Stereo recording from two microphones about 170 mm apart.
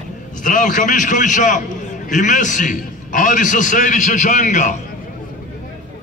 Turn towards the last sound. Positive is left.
turn(degrees=45)  # may be behind; listen again after turning